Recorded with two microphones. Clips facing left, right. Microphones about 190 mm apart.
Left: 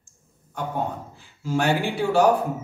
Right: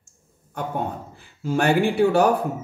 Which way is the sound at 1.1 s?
55° right (ahead or behind).